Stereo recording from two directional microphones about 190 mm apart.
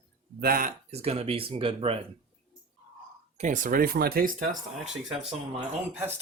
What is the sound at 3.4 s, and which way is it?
Speech, 40° right (ahead or behind).